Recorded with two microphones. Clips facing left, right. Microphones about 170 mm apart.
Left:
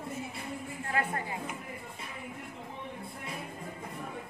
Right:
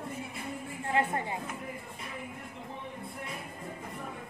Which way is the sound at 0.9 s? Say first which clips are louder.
Right 3 dB; 25° right (ahead or behind).